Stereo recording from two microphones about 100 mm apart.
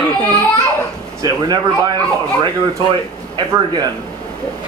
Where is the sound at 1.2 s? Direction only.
45° right (ahead or behind).